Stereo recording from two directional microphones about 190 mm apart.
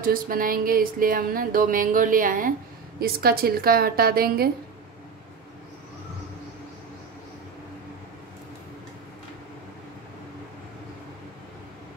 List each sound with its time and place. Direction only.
0.0 s music: 50° right (ahead or behind)